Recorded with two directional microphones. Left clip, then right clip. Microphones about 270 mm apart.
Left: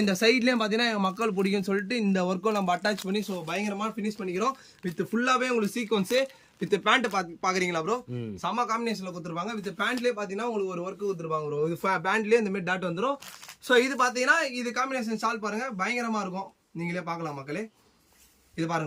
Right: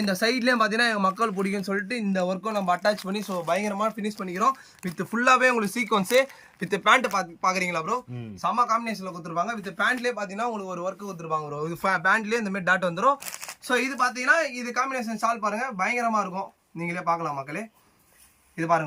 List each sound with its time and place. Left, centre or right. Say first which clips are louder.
0.0 s speech: left 1 dB; centre
1.4 s speech: even; centre
3.1 s speech: right 5 dB; centre
13.7 s a man's voice: left 1 dB; centre